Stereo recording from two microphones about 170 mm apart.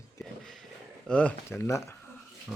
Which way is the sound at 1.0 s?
5° left (ahead or behind).